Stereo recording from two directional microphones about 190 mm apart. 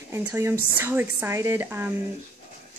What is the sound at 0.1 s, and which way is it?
Speech, 10° right (ahead or behind).